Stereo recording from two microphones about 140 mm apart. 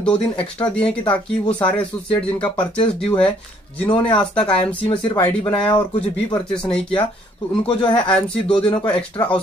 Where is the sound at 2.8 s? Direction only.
40° left (ahead or behind).